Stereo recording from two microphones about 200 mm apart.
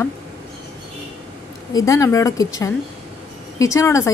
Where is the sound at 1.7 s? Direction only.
15° left (ahead or behind).